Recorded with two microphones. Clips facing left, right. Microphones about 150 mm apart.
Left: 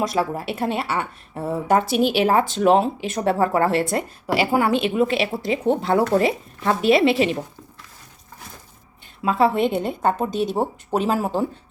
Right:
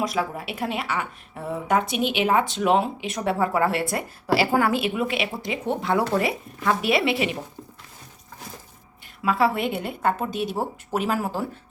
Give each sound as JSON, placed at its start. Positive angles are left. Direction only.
{"t": 0.2, "sound": "speech", "side_deg": 30}
{"t": 4.3, "sound": "a woman's voice", "side_deg": 15}
{"t": 9.2, "sound": "a woman's voice", "side_deg": 25}